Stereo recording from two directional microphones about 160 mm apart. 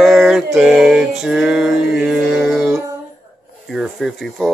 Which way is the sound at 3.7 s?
Centre (ahead or behind).